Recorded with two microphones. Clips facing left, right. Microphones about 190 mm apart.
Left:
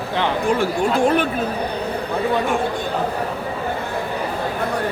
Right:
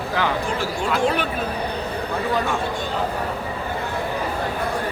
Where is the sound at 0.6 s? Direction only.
50° left (ahead or behind).